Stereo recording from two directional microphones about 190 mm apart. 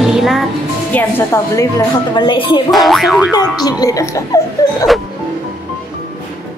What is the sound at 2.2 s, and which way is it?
Speech, 25° left (ahead or behind).